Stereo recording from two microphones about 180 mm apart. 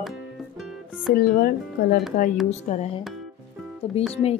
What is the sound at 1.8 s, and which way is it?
Speech, 55° left (ahead or behind).